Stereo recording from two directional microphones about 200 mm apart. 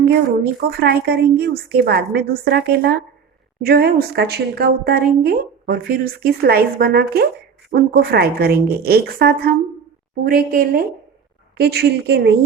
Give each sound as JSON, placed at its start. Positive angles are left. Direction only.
{"t": 0.0, "sound": "a woman's voice", "side_deg": -55}